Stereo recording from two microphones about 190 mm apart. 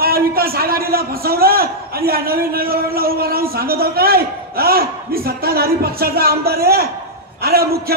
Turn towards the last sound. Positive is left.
turn(degrees=-55)  # may be behind; listen again after turning